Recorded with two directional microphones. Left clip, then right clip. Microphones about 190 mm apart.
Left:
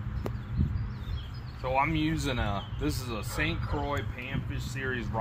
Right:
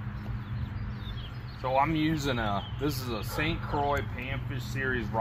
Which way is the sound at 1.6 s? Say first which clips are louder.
Right 1 dB; 25° left (ahead or behind).